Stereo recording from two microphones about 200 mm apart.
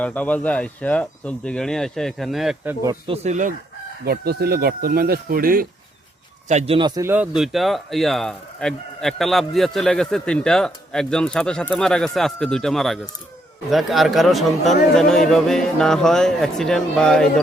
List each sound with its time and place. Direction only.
0.0 s speech: 5° left (ahead or behind)
3.1 s speech: 35° right (ahead or behind)
4.0 s speech: 50° right (ahead or behind)
6.5 s speech: 30° right (ahead or behind); by 17.4 s 5° left (ahead or behind)